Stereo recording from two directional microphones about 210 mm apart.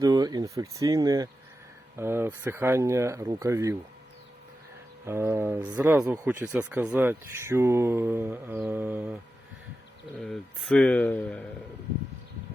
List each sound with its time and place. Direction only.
0.0 s speech: 20° right (ahead or behind)
5.0 s speech: 10° right (ahead or behind)
10.2 s speech: centre (ahead or behind)